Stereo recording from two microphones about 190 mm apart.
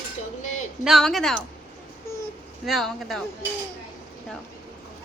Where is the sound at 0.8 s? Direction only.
Centre (ahead or behind).